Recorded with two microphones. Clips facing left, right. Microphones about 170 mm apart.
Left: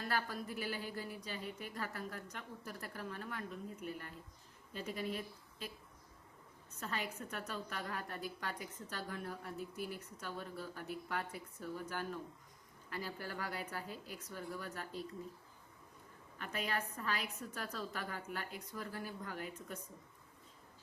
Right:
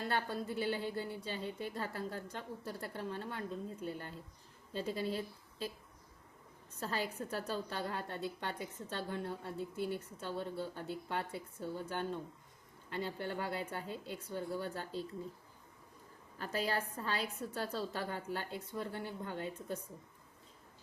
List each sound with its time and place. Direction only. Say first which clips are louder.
0.0 s a woman's voice: right 3 dB; 25° right (ahead or behind)
6.7 s a woman's voice: right 4 dB; 35° right (ahead or behind)
16.4 s a woman's voice: right 4 dB; 35° right (ahead or behind)